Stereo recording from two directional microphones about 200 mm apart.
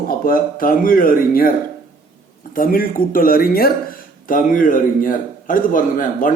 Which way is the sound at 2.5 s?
45° left (ahead or behind).